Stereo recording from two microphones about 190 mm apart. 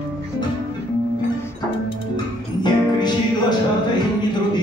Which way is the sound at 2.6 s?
20° left (ahead or behind).